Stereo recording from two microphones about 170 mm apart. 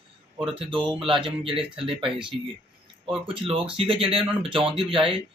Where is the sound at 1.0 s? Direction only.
30° right (ahead or behind).